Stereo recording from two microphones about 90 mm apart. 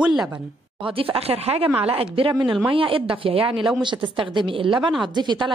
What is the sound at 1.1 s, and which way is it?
A woman's voice, 90° right.